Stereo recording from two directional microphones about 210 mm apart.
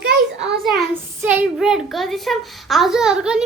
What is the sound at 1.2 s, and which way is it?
A child's voice, 10° right (ahead or behind).